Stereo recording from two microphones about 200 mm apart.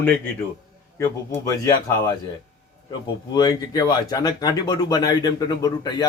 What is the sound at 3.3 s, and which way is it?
Speech, 20° left (ahead or behind).